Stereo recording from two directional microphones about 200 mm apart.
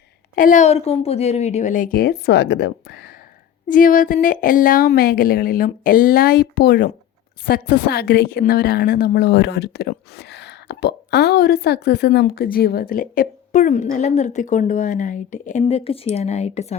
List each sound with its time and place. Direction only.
0.3 s a woman's voice: 40° left (ahead or behind)
3.7 s a woman's voice: 40° left (ahead or behind)